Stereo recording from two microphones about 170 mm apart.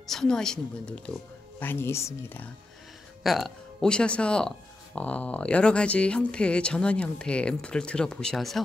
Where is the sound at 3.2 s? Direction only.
Centre (ahead or behind).